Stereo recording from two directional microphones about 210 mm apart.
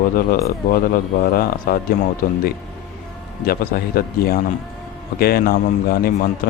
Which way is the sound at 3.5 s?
45° left (ahead or behind).